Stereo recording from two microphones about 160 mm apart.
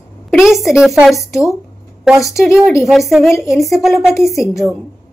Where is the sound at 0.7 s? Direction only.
Centre (ahead or behind).